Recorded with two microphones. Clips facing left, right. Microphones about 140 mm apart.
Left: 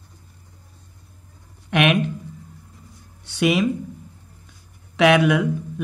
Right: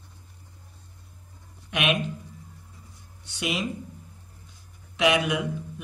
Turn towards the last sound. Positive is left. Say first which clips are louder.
# left 8 dB
turn(degrees=60)  # may be behind; listen again after turning